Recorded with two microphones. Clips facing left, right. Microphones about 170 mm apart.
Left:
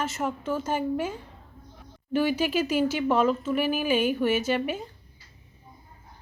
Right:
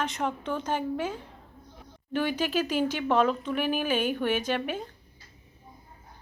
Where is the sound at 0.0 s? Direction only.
5° left (ahead or behind).